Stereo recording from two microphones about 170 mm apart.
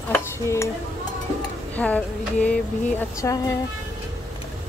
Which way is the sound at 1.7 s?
10° left (ahead or behind).